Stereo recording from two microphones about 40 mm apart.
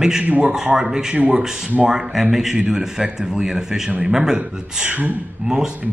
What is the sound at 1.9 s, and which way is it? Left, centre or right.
A man's voice, centre.